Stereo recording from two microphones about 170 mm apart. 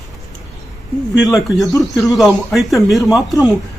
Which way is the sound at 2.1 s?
Centre (ahead or behind).